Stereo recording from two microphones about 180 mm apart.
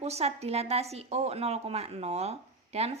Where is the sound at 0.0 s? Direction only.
35° right (ahead or behind).